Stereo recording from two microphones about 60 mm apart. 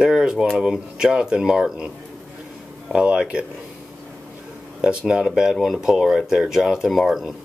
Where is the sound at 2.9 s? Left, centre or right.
Centre.